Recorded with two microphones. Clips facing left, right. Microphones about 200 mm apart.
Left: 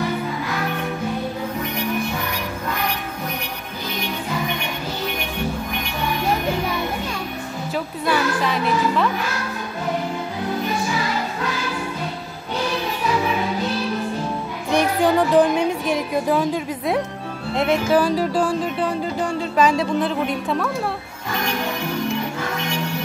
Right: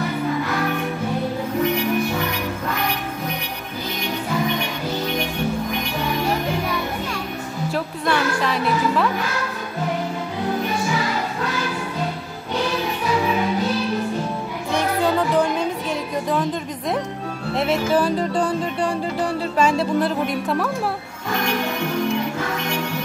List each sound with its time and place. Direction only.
7.7 s music: centre (ahead or behind)
14.7 s music: 15° left (ahead or behind)
19.5 s speech: centre (ahead or behind)